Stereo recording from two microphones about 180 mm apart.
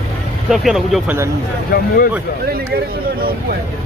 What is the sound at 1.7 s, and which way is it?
Speech, 60° left (ahead or behind).